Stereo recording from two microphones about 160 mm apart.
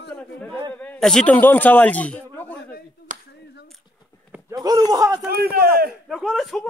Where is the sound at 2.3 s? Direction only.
10° left (ahead or behind).